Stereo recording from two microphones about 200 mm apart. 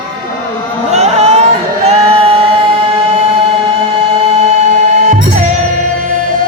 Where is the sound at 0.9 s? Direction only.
30° right (ahead or behind).